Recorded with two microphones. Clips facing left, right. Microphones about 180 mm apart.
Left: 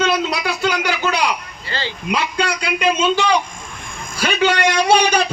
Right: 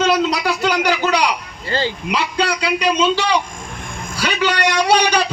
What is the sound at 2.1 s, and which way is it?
A man's voice, 50° left (ahead or behind).